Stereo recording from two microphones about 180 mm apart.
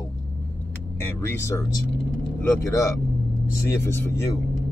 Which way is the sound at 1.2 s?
15° left (ahead or behind).